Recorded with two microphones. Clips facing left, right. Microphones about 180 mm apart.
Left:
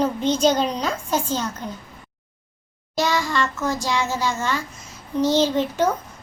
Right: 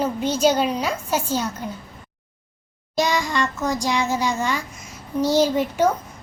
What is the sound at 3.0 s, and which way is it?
A woman's voice, 15° right (ahead or behind).